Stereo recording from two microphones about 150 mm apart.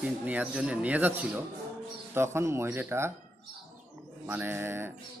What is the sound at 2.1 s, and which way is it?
Speech, 15° right (ahead or behind).